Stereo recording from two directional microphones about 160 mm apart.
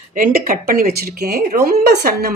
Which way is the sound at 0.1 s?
60° right (ahead or behind).